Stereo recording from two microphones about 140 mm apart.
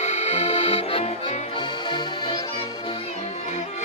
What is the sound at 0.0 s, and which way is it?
Accordion, 55° left (ahead or behind).